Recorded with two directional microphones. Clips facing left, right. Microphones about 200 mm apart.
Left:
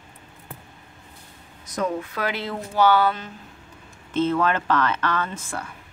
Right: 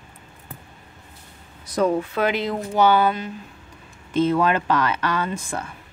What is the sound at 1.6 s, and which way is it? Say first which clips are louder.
Speech: right 6 dB; 35° right (ahead or behind).